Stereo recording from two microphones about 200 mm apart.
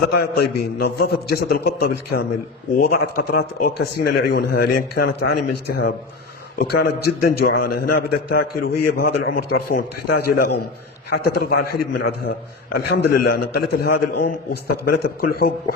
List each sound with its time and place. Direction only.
0.2 s a man's voice: 55° left (ahead or behind)